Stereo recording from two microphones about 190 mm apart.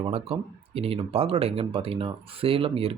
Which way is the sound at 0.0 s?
30° right (ahead or behind).